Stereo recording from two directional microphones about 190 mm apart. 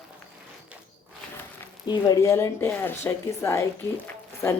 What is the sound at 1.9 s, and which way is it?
Speech, 20° left (ahead or behind).